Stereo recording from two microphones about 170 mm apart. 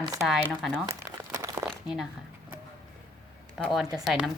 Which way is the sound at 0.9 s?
20° right (ahead or behind).